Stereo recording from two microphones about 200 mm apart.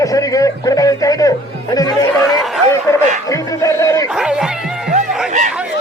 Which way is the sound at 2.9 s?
15° left (ahead or behind).